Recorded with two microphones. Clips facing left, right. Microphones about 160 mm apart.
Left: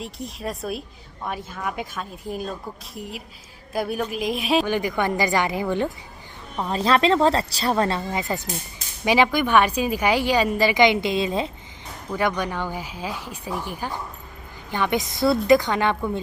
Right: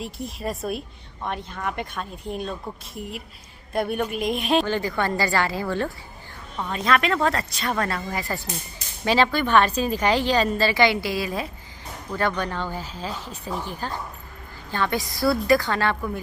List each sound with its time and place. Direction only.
0.0 s speech: centre (ahead or behind)
4.6 s a woman's voice: 15° left (ahead or behind)
6.6 s a woman's voice: 30° left (ahead or behind)
12.1 s a woman's voice: 15° left (ahead or behind)